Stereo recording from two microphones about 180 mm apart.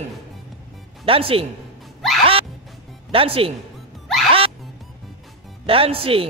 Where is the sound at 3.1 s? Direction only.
30° right (ahead or behind).